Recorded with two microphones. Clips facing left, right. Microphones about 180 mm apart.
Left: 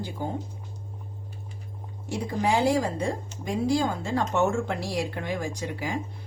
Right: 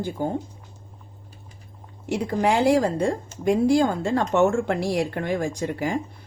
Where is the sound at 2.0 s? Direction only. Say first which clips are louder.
Right 5 dB; 65° right (ahead or behind).